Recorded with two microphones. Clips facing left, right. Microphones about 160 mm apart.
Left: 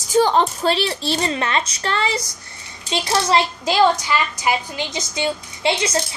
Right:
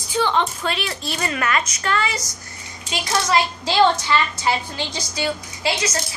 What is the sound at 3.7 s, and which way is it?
A woman's voice, 15° left (ahead or behind).